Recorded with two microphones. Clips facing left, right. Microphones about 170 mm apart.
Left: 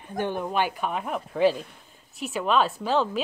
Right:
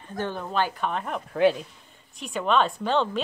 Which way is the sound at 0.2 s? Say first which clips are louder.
Left 1 dB; 15° left (ahead or behind).